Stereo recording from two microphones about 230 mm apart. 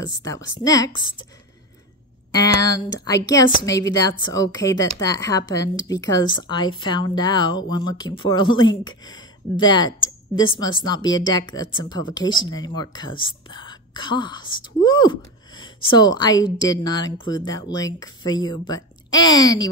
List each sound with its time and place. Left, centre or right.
0.0 s speech: centre
2.3 s speech: centre